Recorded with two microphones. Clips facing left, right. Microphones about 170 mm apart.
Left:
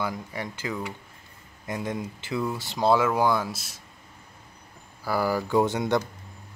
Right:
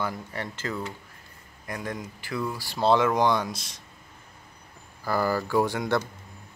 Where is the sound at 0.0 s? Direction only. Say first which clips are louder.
Left 1 dB; 10° left (ahead or behind).